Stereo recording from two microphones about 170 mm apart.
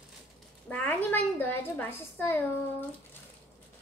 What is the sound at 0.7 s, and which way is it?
A woman's voice, 10° left (ahead or behind).